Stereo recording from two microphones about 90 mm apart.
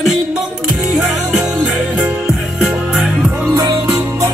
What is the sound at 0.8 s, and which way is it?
Music, 5° right (ahead or behind).